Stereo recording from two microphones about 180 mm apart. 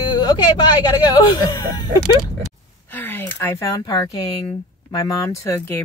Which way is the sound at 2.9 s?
10° left (ahead or behind).